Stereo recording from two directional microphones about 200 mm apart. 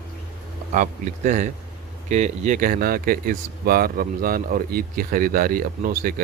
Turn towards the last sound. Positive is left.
turn(degrees=-45)  # may be behind; listen again after turning